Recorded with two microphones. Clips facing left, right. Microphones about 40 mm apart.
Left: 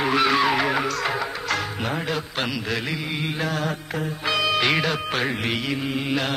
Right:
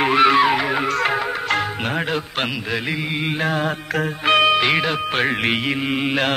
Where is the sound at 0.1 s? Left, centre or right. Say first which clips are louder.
Right 5 dB; right.